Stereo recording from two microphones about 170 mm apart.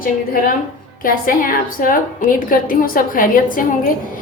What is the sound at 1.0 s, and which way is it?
A woman's voice, 55° left (ahead or behind).